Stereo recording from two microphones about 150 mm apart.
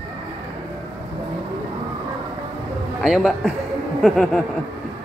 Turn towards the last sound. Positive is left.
turn(degrees=5)  # may be behind; listen again after turning